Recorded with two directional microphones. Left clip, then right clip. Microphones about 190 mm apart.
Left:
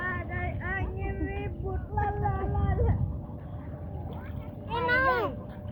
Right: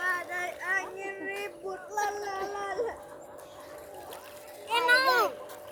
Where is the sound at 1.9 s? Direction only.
40° right (ahead or behind).